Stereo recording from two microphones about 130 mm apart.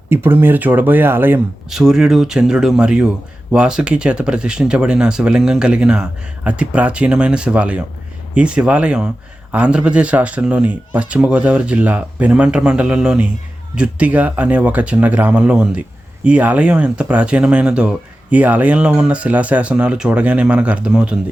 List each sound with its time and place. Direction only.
0.1 s speech: 15° right (ahead or behind)
1.7 s speech: 5° right (ahead or behind)